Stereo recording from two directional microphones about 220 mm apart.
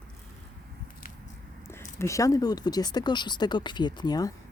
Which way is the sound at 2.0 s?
15° left (ahead or behind).